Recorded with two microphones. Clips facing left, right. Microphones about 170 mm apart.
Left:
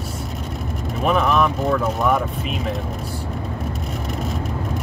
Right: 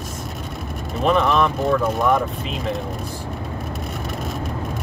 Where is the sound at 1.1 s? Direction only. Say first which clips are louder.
Right 1 dB; 5° left (ahead or behind).